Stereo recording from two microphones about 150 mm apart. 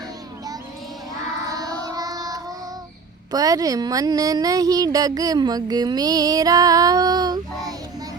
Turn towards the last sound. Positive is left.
turn(degrees=-25)  # may be behind; listen again after turning